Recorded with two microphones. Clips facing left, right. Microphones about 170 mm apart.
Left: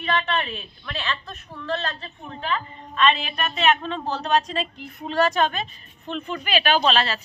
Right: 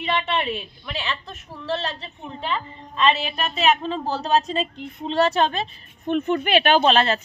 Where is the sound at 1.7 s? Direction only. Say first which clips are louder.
Right 1 dB; 25° right (ahead or behind).